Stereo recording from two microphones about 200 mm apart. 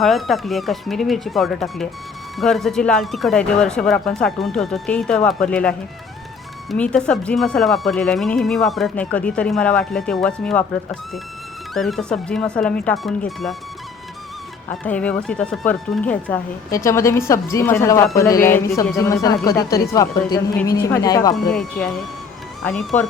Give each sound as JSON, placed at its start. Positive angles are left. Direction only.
{"t": 0.0, "sound": "speech", "side_deg": 0}
{"t": 11.7, "sound": "speech", "side_deg": 0}
{"t": 14.7, "sound": "a woman's voice", "side_deg": 5}
{"t": 21.3, "sound": "speech", "side_deg": 0}